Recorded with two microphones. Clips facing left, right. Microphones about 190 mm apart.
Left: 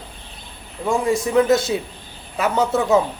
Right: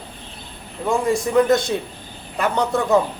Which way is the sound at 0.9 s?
Centre (ahead or behind).